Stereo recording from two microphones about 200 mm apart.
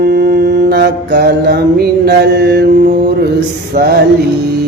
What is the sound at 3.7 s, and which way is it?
Speech, 55° right (ahead or behind).